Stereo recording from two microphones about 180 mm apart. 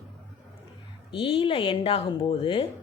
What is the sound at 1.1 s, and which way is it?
Speech, 30° left (ahead or behind).